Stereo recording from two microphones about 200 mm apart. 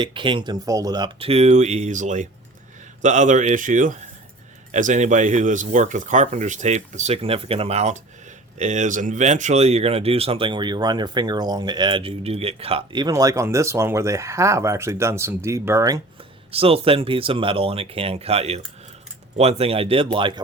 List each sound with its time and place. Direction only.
0.0 s speech: 25° right (ahead or behind)
16.5 s speech: 30° right (ahead or behind)